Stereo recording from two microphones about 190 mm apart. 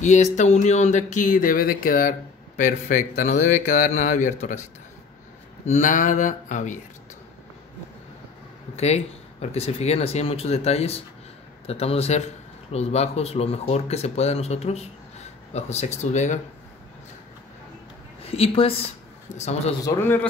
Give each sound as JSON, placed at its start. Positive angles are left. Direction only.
{"t": 0.0, "sound": "speech", "side_deg": 40}
{"t": 5.7, "sound": "speech", "side_deg": 40}
{"t": 8.7, "sound": "speech", "side_deg": 35}
{"t": 18.2, "sound": "a woman's voice", "side_deg": 30}
{"t": 19.8, "sound": "a man's voice", "side_deg": 10}